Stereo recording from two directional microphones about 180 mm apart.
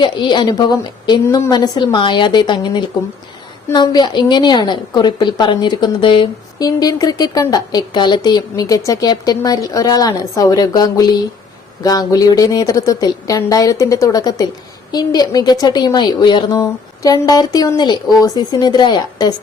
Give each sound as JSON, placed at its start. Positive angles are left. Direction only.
{"t": 0.0, "sound": "a woman's voice", "side_deg": 25}